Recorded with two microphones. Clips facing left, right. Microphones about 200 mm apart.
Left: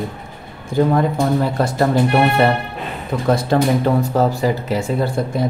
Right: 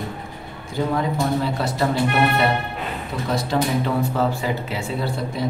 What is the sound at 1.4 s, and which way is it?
Speech, 50° left (ahead or behind).